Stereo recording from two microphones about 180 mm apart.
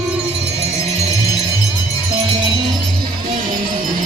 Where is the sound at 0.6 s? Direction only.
35° right (ahead or behind).